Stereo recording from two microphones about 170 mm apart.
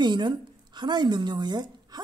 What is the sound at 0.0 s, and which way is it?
A woman's voice, 25° right (ahead or behind).